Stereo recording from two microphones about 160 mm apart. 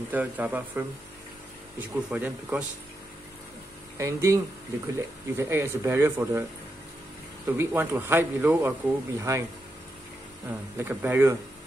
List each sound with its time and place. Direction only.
0.1 s speech: 10° right (ahead or behind)
4.0 s speech: 20° right (ahead or behind)
7.4 s speech: 15° right (ahead or behind)
10.8 s speech: 15° right (ahead or behind)